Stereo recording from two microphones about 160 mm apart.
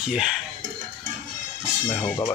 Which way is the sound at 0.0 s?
5° right (ahead or behind).